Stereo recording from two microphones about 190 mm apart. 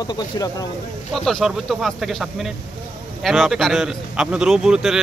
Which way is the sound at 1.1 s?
Centre (ahead or behind).